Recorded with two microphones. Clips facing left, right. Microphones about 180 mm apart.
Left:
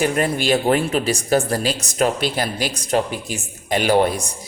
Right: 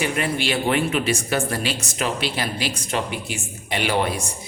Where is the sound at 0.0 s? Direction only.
45° left (ahead or behind).